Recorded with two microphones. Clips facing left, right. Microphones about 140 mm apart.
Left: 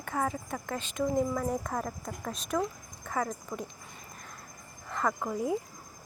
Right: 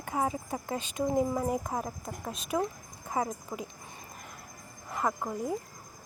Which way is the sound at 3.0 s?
15° right (ahead or behind).